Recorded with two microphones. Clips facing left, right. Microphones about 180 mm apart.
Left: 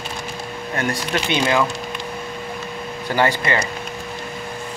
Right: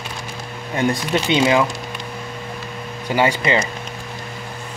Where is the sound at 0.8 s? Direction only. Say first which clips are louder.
Right 4 dB; 20° right (ahead or behind).